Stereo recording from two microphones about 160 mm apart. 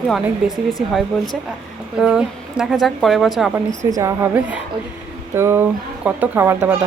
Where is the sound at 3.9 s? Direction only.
20° right (ahead or behind).